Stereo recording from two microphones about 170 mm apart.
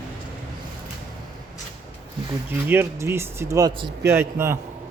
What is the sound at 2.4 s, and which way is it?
Speech, 15° right (ahead or behind).